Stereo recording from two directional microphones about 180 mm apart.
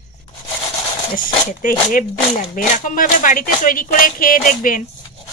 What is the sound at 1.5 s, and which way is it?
Speech, 45° left (ahead or behind).